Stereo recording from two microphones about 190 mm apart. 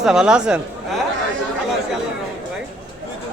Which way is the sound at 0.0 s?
5° right (ahead or behind).